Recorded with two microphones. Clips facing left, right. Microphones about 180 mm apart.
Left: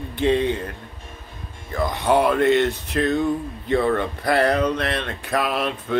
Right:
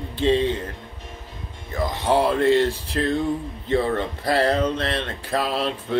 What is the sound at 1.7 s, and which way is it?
Speech, 25° right (ahead or behind).